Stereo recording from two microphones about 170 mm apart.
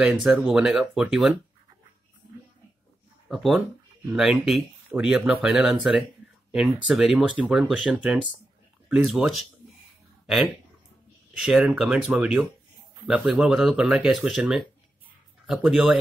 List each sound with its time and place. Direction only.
0.0 s speech: 5° right (ahead or behind)
4.1 s speech: 5° right (ahead or behind)